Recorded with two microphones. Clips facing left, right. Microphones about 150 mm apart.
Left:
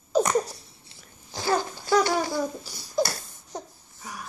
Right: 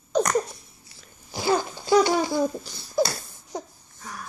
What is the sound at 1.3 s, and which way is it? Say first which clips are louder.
Babbling: right 2 dB; 15° right (ahead or behind).